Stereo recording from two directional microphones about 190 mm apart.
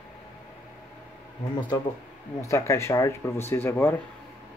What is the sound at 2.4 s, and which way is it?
Speech, 15° left (ahead or behind).